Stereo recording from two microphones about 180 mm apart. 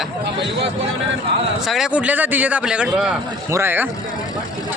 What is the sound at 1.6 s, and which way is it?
A man's voice, centre (ahead or behind).